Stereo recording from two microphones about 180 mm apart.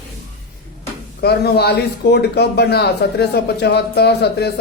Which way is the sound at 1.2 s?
65° left (ahead or behind).